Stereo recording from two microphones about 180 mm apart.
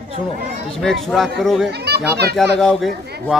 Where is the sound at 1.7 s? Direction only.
65° right (ahead or behind).